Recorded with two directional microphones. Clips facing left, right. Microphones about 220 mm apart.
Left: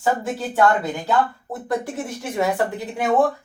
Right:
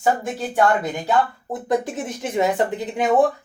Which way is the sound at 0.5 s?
15° right (ahead or behind).